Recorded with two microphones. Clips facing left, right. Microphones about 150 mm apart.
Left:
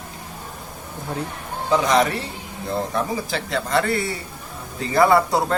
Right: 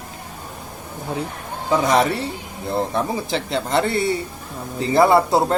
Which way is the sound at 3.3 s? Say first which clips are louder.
Right 2 dB; 25° right (ahead or behind).